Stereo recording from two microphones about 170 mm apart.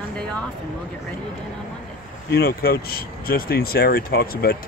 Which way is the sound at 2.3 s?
65° left (ahead or behind).